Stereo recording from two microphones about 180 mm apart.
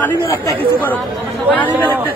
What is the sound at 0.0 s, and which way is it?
Speech, 10° left (ahead or behind).